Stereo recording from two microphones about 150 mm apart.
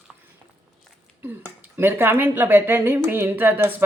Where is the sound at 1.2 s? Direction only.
15° right (ahead or behind).